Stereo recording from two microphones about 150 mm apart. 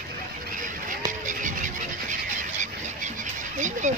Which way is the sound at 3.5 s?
55° right (ahead or behind).